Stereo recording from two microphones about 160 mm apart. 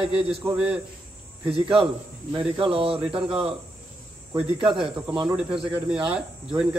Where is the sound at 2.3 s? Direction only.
35° right (ahead or behind).